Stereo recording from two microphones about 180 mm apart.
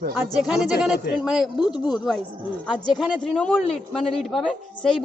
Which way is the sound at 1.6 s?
25° left (ahead or behind).